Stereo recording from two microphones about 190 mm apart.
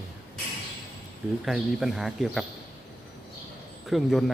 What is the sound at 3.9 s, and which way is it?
Speech, centre (ahead or behind).